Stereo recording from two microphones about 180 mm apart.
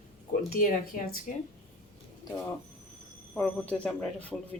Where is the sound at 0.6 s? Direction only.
50° left (ahead or behind).